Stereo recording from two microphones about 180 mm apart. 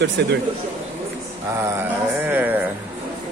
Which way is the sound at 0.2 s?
70° right (ahead or behind).